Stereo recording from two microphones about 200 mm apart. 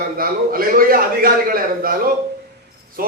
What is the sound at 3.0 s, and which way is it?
Speech, 45° right (ahead or behind).